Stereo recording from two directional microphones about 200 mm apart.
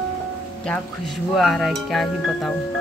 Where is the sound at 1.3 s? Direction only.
Centre (ahead or behind).